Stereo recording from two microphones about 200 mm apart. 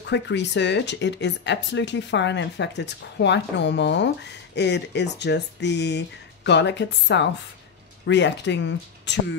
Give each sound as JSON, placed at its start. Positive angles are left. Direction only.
{"t": 0.1, "sound": "speech", "side_deg": 60}